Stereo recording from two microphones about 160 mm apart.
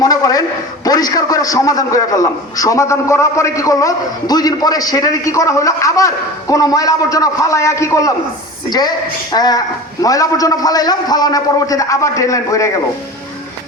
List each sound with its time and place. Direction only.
0.0 s a man's voice: 20° left (ahead or behind)
9.3 s a man's voice: 25° left (ahead or behind)